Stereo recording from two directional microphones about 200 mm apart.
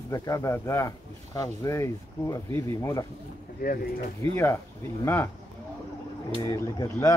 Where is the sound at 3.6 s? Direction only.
45° left (ahead or behind).